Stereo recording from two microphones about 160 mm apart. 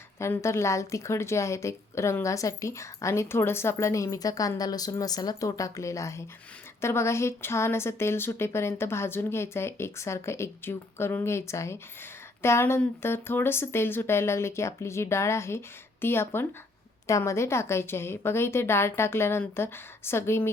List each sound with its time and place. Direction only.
0.2 s a woman's voice: 15° left (ahead or behind)